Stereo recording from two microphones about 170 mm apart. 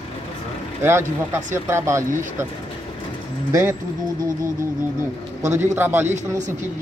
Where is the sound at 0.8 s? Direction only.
15° right (ahead or behind).